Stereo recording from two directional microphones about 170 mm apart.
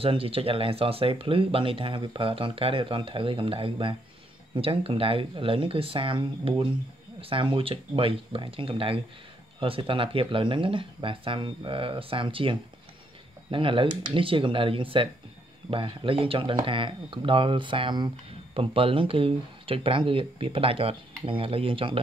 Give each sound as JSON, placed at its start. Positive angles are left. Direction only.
{"t": 0.0, "sound": "speech", "side_deg": -35}